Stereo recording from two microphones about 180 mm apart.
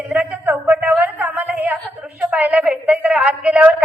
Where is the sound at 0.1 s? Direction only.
5° right (ahead or behind).